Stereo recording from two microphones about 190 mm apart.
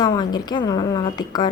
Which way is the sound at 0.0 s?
20° left (ahead or behind).